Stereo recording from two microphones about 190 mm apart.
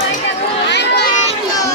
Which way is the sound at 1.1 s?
35° left (ahead or behind).